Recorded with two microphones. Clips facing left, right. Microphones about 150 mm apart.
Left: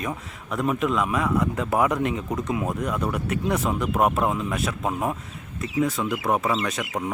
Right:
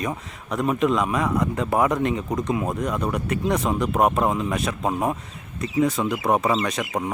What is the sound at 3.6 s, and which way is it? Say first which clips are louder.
Speech: right 2 dB; 15° right (ahead or behind).